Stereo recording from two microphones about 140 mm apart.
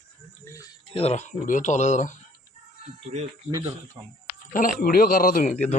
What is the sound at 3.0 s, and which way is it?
Speech, 50° right (ahead or behind).